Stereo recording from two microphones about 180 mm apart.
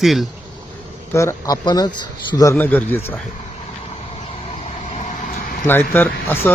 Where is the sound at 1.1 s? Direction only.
20° left (ahead or behind).